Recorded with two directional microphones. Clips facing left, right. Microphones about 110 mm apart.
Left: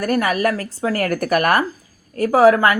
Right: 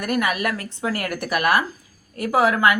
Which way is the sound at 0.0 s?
35° left (ahead or behind).